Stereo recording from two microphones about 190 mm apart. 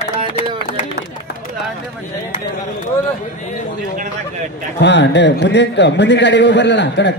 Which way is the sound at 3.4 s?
40° left (ahead or behind).